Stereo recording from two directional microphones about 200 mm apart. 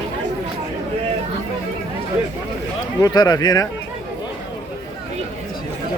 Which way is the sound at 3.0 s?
20° left (ahead or behind).